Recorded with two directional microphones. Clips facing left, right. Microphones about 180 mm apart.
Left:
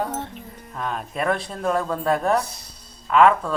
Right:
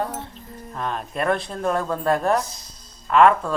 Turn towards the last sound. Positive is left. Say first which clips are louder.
# right 1 dB
turn(degrees=0)  # may be behind; listen again after turning